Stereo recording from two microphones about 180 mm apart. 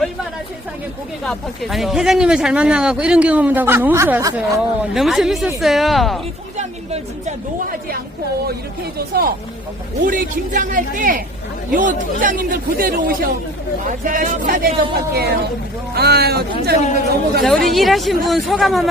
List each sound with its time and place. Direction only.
1.2 s speech: centre (ahead or behind)
6.6 s speech: 40° right (ahead or behind)
9.0 s speech: 55° right (ahead or behind)
15.1 s speech: 60° right (ahead or behind)
17.4 s speech: centre (ahead or behind)